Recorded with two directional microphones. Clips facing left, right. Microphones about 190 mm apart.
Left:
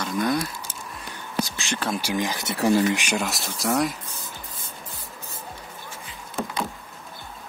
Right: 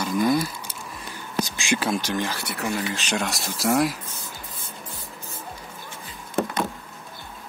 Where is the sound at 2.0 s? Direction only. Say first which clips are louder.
Left 1 dB; 10° left (ahead or behind).